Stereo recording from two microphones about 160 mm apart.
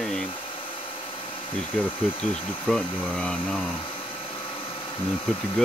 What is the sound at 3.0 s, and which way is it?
Speech, 10° left (ahead or behind).